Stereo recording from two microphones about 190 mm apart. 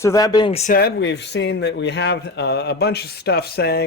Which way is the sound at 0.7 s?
60° left (ahead or behind).